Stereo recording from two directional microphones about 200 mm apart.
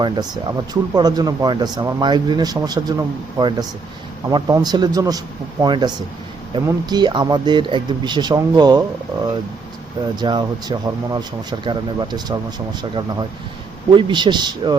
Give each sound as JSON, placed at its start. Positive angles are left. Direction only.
{"t": 0.0, "sound": "speech", "side_deg": -20}
{"t": 10.2, "sound": "speech", "side_deg": -20}